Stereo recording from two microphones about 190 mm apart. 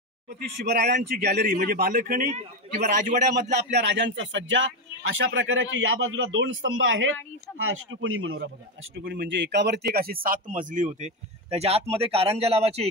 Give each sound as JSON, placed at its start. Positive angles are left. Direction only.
{"t": 0.4, "sound": "a man's voice", "side_deg": -55}
{"t": 3.7, "sound": "speech", "side_deg": -65}
{"t": 5.2, "sound": "a man's voice", "side_deg": -85}
{"t": 8.9, "sound": "a man's voice", "side_deg": -65}
{"t": 11.5, "sound": "speech", "side_deg": -30}